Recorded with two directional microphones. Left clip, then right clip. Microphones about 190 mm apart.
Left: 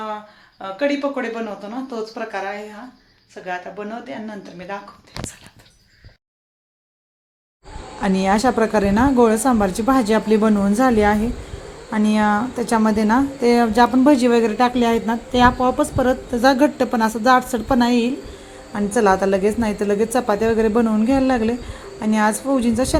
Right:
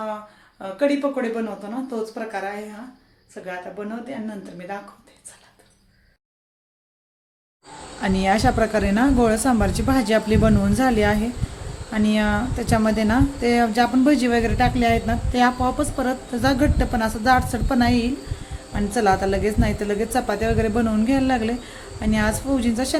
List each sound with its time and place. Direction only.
0.6 s a woman's voice: 5° right (ahead or behind)
8.0 s a woman's voice: 10° left (ahead or behind)